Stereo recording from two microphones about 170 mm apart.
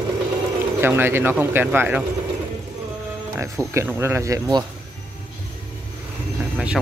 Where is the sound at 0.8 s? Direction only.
15° right (ahead or behind).